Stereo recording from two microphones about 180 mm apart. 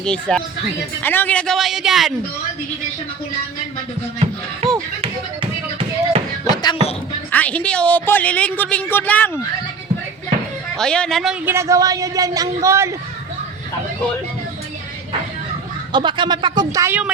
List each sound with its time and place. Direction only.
0.0 s a man's voice: 5° left (ahead or behind)
4.6 s music: 35° right (ahead or behind)
6.4 s music: 25° left (ahead or behind)
7.3 s a woman's voice: 10° left (ahead or behind)
10.8 s a man's voice: 5° left (ahead or behind)
11.4 s a woman's voice: 15° right (ahead or behind)
15.9 s speech: 25° right (ahead or behind)